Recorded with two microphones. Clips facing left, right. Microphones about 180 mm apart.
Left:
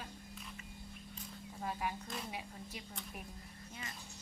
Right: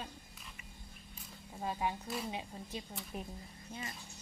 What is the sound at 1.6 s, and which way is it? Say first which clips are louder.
Speech: right 3 dB; 25° right (ahead or behind).